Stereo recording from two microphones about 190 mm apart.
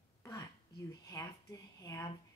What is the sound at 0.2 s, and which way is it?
Whispering, 15° left (ahead or behind).